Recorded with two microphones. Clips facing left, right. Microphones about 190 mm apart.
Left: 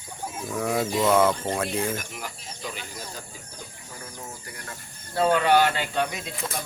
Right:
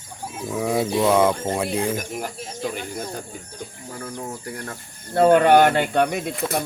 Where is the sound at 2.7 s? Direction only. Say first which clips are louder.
Right 8 dB; 60° right (ahead or behind).